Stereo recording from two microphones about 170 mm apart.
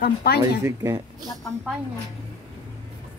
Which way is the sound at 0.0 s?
65° left (ahead or behind).